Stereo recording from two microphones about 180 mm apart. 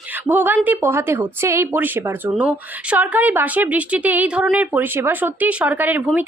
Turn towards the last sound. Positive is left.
turn(degrees=-10)  # may be behind; listen again after turning